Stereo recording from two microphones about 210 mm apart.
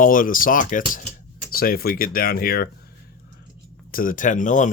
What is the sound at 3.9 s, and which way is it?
Speech, 40° left (ahead or behind).